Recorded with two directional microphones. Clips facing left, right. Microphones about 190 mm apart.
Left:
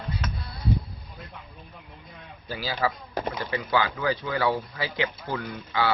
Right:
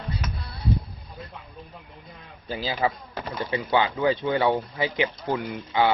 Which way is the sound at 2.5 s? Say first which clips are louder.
Right 2 dB; 20° right (ahead or behind).